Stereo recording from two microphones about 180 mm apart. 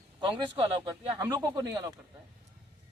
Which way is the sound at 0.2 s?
25° right (ahead or behind).